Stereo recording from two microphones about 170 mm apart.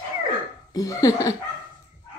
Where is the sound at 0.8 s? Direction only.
20° left (ahead or behind).